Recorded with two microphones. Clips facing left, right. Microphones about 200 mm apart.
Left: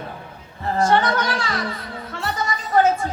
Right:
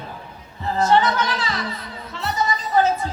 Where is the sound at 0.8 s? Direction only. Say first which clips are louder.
Right 1 dB; 50° left (ahead or behind).